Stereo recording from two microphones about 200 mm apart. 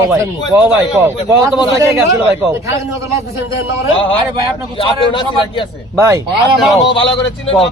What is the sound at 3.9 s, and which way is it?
A man's voice, 25° left (ahead or behind).